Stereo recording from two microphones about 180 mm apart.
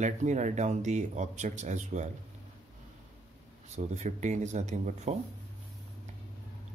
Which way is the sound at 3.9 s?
40° right (ahead or behind).